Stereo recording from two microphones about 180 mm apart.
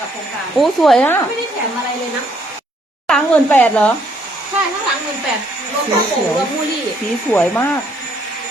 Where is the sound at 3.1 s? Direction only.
5° left (ahead or behind).